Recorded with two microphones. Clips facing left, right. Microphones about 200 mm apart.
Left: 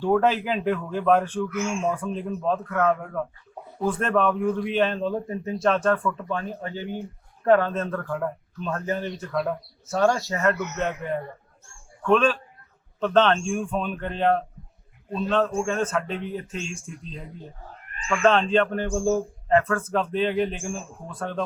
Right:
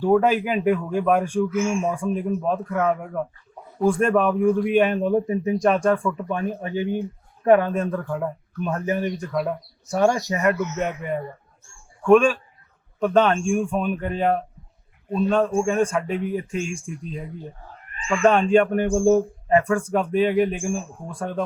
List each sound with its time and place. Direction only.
0.0 s speech: 10° right (ahead or behind)
9.3 s speech: 5° right (ahead or behind)
9.9 s speech: 15° right (ahead or behind)